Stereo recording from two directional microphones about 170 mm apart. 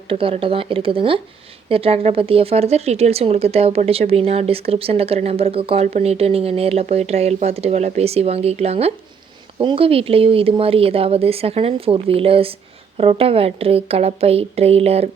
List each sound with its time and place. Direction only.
0.1 s speech: 35° right (ahead or behind)